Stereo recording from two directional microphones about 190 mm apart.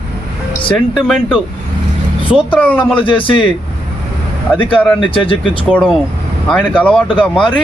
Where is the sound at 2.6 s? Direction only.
10° left (ahead or behind).